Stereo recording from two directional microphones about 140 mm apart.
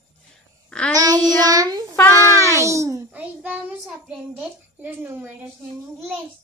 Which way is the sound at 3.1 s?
10° right (ahead or behind).